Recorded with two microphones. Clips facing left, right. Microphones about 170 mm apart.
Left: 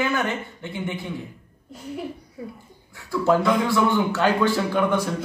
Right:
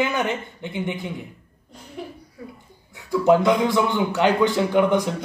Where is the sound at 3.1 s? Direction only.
20° right (ahead or behind).